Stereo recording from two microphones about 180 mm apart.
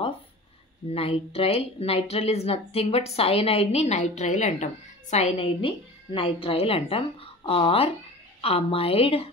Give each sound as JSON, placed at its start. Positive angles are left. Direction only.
{"t": 0.9, "sound": "speech", "side_deg": 35}